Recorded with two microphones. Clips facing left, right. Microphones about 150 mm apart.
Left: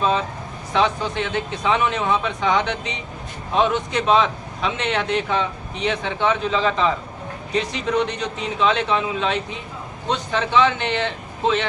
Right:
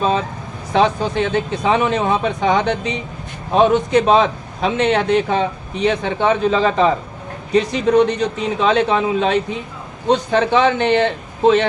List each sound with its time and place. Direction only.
0.7 s a man's voice: 45° right (ahead or behind)